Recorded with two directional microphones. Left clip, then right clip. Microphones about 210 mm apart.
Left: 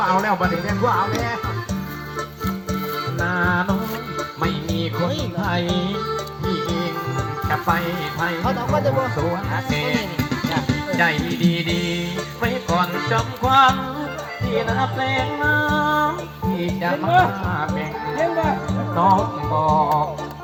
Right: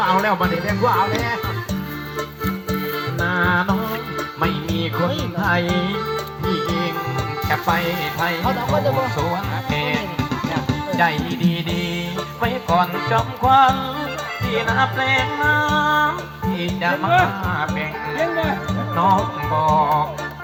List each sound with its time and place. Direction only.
0.0 s speech: 40° right (ahead or behind)
3.2 s music: 45° right (ahead or behind)
7.4 s speech: 40° right (ahead or behind)
8.9 s music: 40° right (ahead or behind)
16.8 s speech: 30° right (ahead or behind)